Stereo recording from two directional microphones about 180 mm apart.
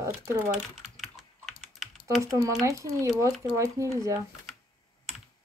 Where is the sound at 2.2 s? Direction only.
15° right (ahead or behind).